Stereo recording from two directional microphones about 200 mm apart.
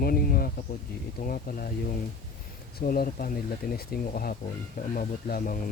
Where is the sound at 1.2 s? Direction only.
45° left (ahead or behind).